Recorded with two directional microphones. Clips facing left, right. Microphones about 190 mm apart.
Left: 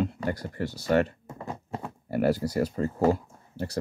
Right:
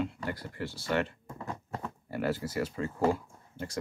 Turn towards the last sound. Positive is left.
turn(degrees=40)  # may be behind; listen again after turning